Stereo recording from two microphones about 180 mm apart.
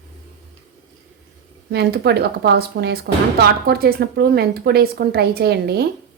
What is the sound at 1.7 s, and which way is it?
Speech, 65° right (ahead or behind).